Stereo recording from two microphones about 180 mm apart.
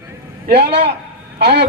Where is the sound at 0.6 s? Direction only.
70° right (ahead or behind).